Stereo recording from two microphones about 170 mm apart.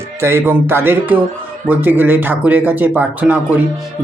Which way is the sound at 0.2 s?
15° right (ahead or behind).